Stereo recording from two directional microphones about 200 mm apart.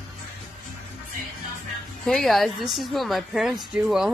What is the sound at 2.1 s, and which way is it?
A woman's voice, centre (ahead or behind).